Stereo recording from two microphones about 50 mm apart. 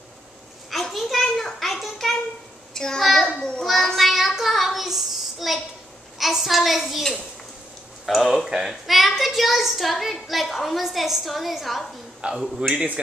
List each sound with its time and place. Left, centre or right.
0.7 s a sound: centre
2.7 s child singing: centre
3.0 s a child's voice: centre
3.3 s a child's voice: centre
3.6 s child singing: centre
6.1 s a woman's voice: centre
8.0 s a child's voice: centre
8.5 s a child's voice: centre
12.2 s speech: centre